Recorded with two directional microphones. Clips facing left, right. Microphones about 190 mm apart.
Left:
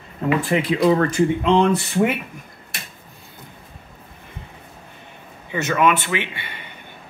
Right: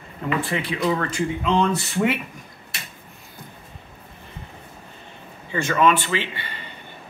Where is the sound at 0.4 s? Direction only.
40° left (ahead or behind).